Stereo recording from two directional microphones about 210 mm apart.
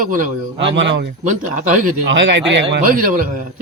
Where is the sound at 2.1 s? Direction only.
60° right (ahead or behind).